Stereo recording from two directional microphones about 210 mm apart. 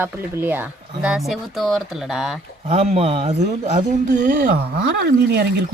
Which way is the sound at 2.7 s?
30° right (ahead or behind).